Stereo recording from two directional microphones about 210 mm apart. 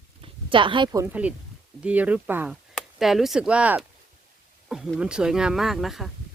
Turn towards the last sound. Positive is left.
turn(degrees=0)  # may be behind; listen again after turning